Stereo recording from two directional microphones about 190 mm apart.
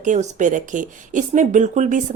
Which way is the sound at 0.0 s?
40° right (ahead or behind).